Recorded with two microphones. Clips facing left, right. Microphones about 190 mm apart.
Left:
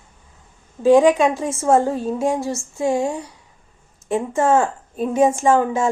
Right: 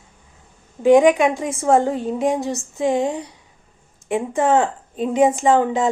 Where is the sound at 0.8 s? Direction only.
15° right (ahead or behind).